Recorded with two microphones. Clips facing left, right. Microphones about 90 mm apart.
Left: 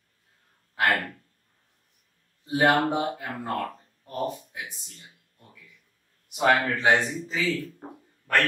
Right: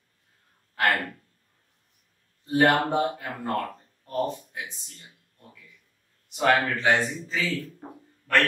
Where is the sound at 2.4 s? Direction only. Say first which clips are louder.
Even; 10° left (ahead or behind).